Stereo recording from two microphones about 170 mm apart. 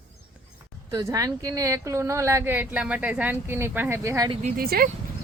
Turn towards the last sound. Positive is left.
turn(degrees=-60)  # may be behind; listen again after turning